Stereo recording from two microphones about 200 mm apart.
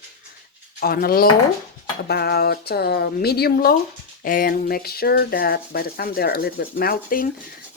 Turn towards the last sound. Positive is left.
turn(degrees=45)  # may be behind; listen again after turning